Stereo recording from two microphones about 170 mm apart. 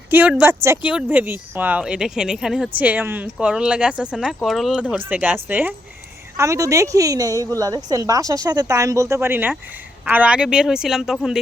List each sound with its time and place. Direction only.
0.1 s a woman's voice: 10° right (ahead or behind)